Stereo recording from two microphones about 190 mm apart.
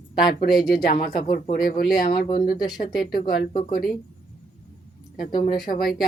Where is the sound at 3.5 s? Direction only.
45° left (ahead or behind).